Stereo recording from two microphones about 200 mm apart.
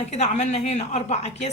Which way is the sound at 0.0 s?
35° left (ahead or behind).